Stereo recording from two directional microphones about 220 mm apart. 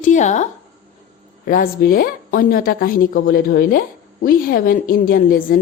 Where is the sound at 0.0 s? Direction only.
35° left (ahead or behind).